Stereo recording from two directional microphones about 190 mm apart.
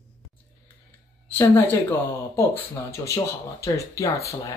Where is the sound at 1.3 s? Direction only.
10° left (ahead or behind).